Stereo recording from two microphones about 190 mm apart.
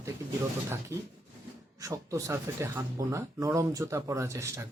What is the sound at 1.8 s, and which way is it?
Speech, 15° right (ahead or behind).